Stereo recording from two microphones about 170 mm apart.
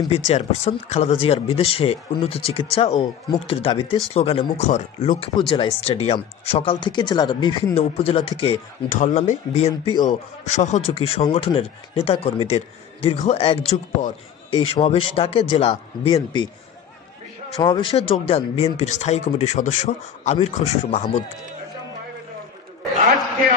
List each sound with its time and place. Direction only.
0.1 s speech: 40° left (ahead or behind)
8.8 s speech: 45° left (ahead or behind)
17.6 s a man's voice: 25° left (ahead or behind)